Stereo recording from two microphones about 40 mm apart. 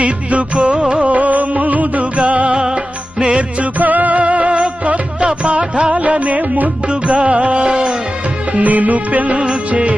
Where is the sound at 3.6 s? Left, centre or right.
Right.